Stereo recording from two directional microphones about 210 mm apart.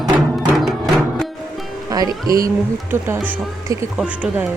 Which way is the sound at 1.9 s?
15° right (ahead or behind).